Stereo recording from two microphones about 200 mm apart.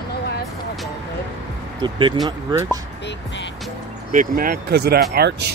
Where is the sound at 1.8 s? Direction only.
25° right (ahead or behind).